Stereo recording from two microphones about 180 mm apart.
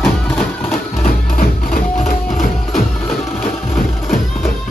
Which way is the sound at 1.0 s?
50° left (ahead or behind).